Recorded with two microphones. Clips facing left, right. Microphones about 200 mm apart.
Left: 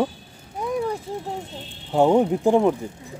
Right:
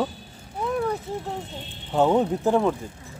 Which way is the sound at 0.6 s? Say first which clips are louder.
Even; 15° left (ahead or behind).